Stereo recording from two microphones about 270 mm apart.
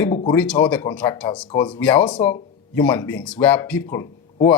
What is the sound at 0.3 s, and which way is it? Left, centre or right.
Speech, centre.